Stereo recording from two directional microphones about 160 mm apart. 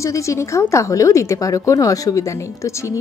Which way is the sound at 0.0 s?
20° left (ahead or behind).